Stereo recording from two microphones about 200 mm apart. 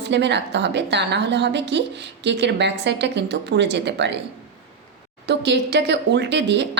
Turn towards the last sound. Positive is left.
turn(degrees=-60)  # may be behind; listen again after turning